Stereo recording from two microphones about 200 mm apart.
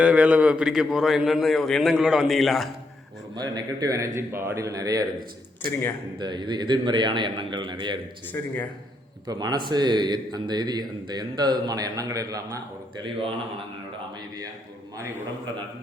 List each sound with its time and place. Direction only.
0.0 s a man's voice: 5° right (ahead or behind)
3.3 s a man's voice: 20° right (ahead or behind)
6.1 s speech: 20° right (ahead or behind)
8.3 s a man's voice: 10° left (ahead or behind)
9.2 s speech: 20° right (ahead or behind)
14.9 s a man's voice: 10° right (ahead or behind)